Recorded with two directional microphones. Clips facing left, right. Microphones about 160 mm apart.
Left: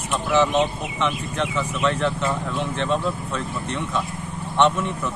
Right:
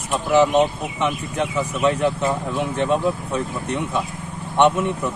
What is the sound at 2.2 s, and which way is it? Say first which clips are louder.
Speech: right 3 dB; 20° right (ahead or behind).